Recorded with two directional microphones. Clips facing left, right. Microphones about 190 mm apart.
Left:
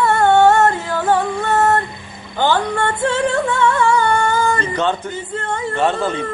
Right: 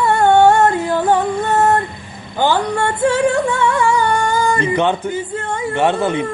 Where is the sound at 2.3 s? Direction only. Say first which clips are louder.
Right 1 dB; 10° right (ahead or behind).